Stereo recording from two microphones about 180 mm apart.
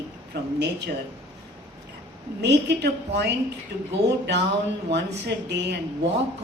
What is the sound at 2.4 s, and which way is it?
Speech, 70° right (ahead or behind).